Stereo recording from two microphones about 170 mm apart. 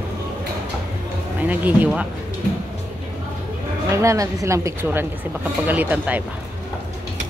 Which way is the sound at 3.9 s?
20° right (ahead or behind).